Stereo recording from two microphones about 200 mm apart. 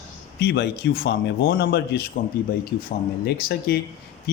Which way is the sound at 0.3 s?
55° left (ahead or behind).